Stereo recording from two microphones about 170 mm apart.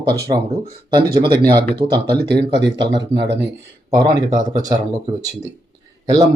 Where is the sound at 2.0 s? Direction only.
75° right (ahead or behind).